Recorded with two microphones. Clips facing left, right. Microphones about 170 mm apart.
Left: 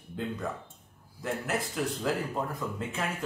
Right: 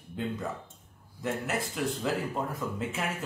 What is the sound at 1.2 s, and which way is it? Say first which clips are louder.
Speech: even; centre (ahead or behind).